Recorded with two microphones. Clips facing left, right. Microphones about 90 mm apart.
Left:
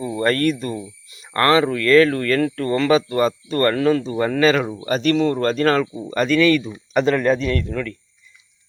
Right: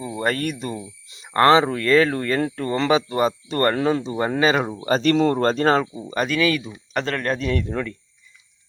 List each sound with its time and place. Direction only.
0.0 s speech: 10° right (ahead or behind)
4.6 s speech: 30° right (ahead or behind)
6.0 s speech: 10° right (ahead or behind)
7.0 s speech: 10° left (ahead or behind)